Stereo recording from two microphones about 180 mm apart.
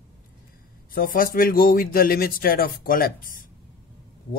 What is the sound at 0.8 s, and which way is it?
Speech, 50° left (ahead or behind).